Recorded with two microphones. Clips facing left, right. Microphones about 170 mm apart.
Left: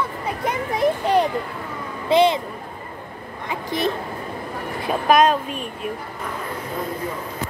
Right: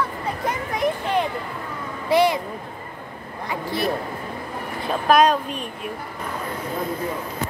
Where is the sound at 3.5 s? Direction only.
20° left (ahead or behind).